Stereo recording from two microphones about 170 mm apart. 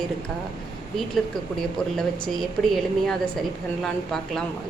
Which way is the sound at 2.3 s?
Centre (ahead or behind).